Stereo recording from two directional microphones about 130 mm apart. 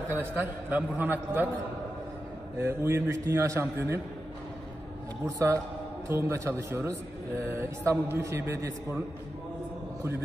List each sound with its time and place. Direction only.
0.1 s a man's voice: 15° right (ahead or behind)
2.6 s a man's voice: 20° right (ahead or behind)
5.2 s a man's voice: 20° right (ahead or behind)